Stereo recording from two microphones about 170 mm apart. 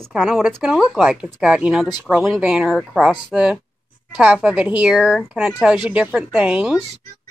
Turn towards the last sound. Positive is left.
turn(degrees=-5)  # may be behind; listen again after turning